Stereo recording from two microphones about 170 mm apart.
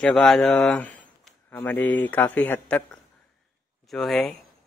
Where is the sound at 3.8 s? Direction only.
Centre (ahead or behind).